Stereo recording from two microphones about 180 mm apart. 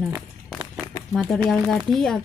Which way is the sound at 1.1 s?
Centre (ahead or behind).